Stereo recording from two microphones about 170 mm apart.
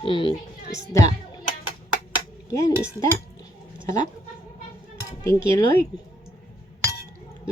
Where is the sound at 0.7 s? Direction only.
20° left (ahead or behind).